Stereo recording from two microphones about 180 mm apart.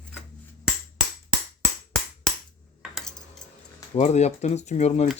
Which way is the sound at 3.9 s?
40° left (ahead or behind).